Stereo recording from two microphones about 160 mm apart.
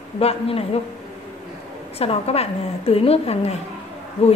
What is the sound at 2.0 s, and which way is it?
A woman's voice, 40° left (ahead or behind).